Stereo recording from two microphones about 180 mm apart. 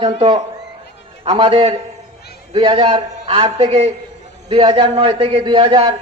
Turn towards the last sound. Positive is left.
turn(degrees=-30)  # may be behind; listen again after turning